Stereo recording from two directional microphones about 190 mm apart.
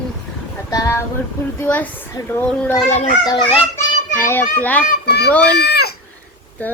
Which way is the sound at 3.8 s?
15° left (ahead or behind).